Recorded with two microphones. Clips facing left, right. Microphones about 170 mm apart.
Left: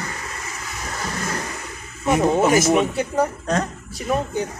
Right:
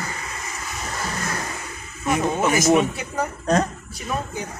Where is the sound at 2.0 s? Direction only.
35° left (ahead or behind).